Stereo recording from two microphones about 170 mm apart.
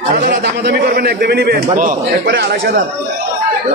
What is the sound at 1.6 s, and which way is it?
Speech, 50° right (ahead or behind).